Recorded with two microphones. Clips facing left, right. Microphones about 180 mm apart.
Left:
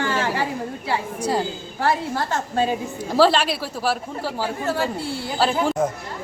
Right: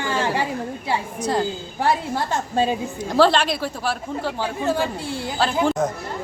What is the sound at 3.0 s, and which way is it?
Speech, 5° left (ahead or behind).